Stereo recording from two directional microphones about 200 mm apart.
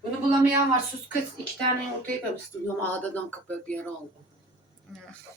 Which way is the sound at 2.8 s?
10° left (ahead or behind).